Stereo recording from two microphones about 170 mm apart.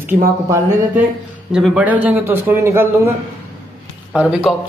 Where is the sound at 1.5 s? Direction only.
5° right (ahead or behind).